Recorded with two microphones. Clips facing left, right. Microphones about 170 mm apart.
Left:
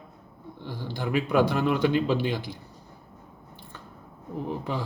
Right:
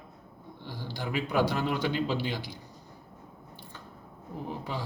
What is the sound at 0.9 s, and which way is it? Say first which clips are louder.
A man's voice: left 5 dB; 50° left (ahead or behind).